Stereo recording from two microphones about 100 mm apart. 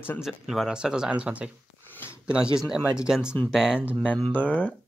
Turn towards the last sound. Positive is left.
turn(degrees=15)  # may be behind; listen again after turning